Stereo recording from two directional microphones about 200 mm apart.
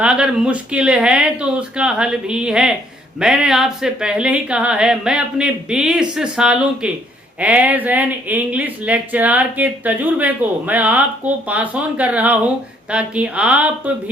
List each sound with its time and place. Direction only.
0.0 s speech: 5° right (ahead or behind)